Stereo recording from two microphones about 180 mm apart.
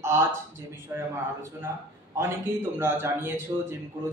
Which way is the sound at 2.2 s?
15° right (ahead or behind).